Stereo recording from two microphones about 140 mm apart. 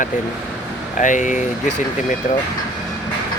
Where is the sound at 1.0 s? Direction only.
65° left (ahead or behind).